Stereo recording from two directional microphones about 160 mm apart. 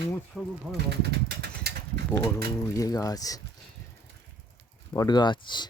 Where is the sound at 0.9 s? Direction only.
90° right.